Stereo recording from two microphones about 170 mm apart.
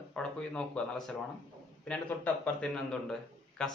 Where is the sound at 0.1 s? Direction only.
5° left (ahead or behind).